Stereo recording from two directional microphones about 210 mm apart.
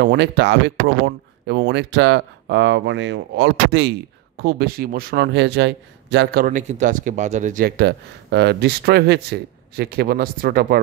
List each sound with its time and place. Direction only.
0.0 s a man's voice: 55° right (ahead or behind)